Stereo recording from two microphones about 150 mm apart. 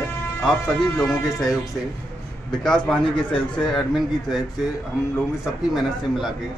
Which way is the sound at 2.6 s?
5° left (ahead or behind).